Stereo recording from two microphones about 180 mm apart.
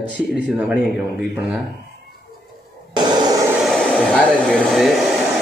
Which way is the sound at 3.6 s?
5° left (ahead or behind).